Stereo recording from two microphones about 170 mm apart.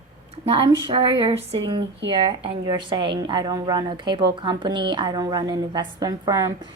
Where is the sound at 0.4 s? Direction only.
30° right (ahead or behind).